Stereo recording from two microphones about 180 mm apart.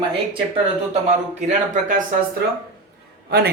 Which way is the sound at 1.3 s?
40° right (ahead or behind).